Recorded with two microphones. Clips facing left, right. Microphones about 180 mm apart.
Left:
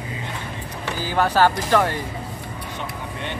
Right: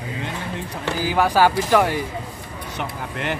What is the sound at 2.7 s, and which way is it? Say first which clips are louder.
Speech: right 5 dB; 90° right.